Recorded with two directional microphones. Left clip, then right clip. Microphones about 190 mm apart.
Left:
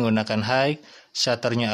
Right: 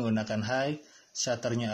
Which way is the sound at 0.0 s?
30° left (ahead or behind).